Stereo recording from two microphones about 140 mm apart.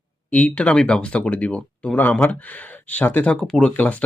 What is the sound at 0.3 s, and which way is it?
Speech, 10° left (ahead or behind).